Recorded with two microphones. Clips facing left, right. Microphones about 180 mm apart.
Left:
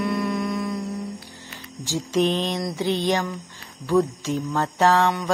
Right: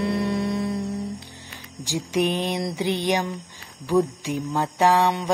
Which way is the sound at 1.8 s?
15° right (ahead or behind).